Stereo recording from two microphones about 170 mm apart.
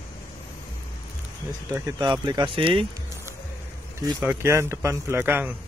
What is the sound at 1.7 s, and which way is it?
Speech, 20° right (ahead or behind).